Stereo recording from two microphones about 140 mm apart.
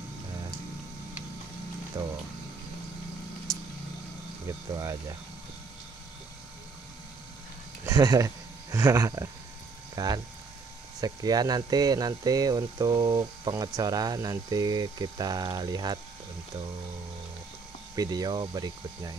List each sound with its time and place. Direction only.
2.0 s speech: 25° right (ahead or behind)
4.5 s speech: 25° right (ahead or behind)
7.8 s speech: 25° right (ahead or behind)
17.9 s speech: 30° right (ahead or behind)